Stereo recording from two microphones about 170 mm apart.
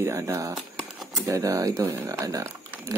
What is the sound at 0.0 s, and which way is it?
Speech, 15° right (ahead or behind).